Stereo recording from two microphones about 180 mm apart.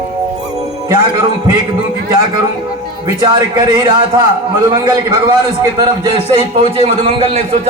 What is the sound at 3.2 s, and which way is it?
A man's voice, 20° right (ahead or behind).